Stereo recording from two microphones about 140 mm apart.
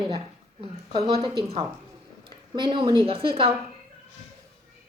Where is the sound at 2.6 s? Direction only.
35° right (ahead or behind).